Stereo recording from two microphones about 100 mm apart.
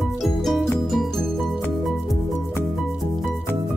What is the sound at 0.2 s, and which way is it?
Music, centre (ahead or behind).